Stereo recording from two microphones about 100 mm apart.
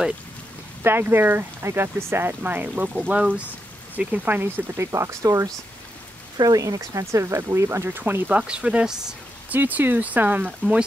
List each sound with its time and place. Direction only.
0.8 s speech: 20° right (ahead or behind)
8.4 s speech: 10° right (ahead or behind)